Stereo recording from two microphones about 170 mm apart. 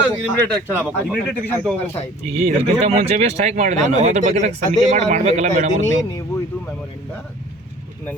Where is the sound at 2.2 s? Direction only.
40° right (ahead or behind).